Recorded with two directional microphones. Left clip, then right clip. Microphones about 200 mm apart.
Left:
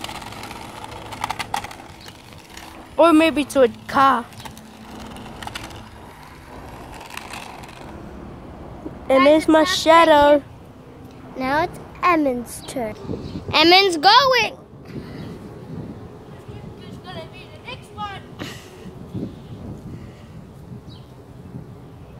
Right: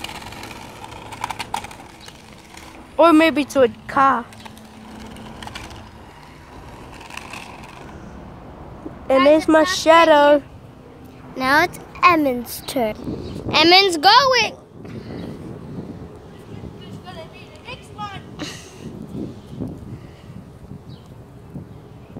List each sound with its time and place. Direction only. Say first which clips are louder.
0.0 s vehicle: even; centre (ahead or behind)
3.0 s speech: right 1 dB; 10° right (ahead or behind)
3.8 s speech: even; 10° left (ahead or behind)
4.9 s vehicle: left 2 dB; 5° left (ahead or behind)
7.0 s vehicle: even; 5° left (ahead or behind)
9.3 s speech: right 1 dB; centre (ahead or behind)
11.3 s speech: right 5 dB; 50° right (ahead or behind)
12.0 s a woman's voice: right 3 dB; 35° right (ahead or behind)
13.5 s speech: right 1 dB; centre (ahead or behind)
17.0 s vehicle: left 2 dB; centre (ahead or behind)
18.4 s a sound: right 3 dB; 5° left (ahead or behind)